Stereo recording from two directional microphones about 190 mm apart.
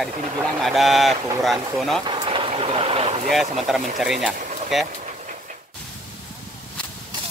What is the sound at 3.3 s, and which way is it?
Speech, centre (ahead or behind).